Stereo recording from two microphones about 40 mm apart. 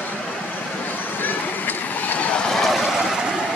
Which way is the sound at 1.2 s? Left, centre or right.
Left.